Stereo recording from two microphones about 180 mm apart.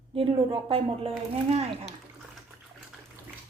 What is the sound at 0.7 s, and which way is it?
A woman's voice, 35° right (ahead or behind).